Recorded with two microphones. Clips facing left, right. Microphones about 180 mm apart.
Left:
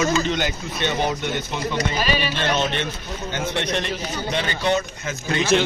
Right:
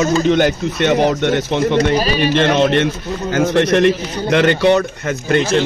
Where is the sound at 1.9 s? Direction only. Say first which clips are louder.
Right 7 dB; 40° right (ahead or behind).